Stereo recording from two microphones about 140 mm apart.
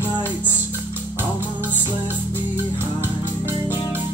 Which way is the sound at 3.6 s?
25° left (ahead or behind).